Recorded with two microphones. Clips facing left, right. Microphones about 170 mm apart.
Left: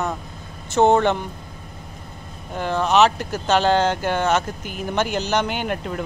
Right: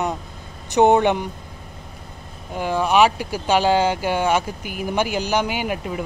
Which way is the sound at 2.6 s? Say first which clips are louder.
Even; 10° right (ahead or behind).